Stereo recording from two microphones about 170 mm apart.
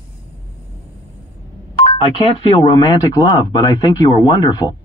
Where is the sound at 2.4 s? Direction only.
25° left (ahead or behind).